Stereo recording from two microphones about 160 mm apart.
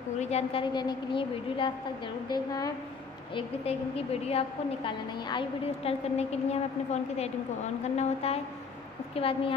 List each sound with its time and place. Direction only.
0.2 s a woman's voice: 40° left (ahead or behind); by 2.7 s 25° left (ahead or behind)
3.3 s a woman's voice: 40° left (ahead or behind)